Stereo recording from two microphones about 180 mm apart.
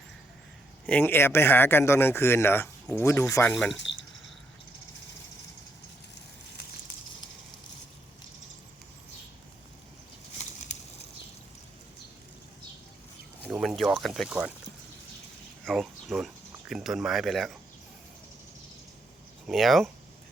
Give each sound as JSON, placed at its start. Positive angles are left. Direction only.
{"t": 0.9, "sound": "speech", "side_deg": 10}
{"t": 3.9, "sound": "a sound", "side_deg": 90}
{"t": 10.7, "sound": "bird flight", "side_deg": 40}
{"t": 13.5, "sound": "a sound", "side_deg": -5}
{"t": 15.6, "sound": "speech", "side_deg": 0}
{"t": 19.5, "sound": "speech", "side_deg": 0}